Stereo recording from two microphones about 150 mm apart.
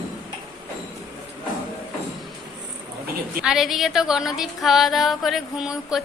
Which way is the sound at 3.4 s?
5° right (ahead or behind).